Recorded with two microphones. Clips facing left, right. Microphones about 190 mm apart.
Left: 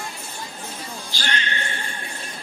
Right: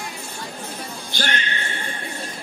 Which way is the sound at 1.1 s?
55° right (ahead or behind).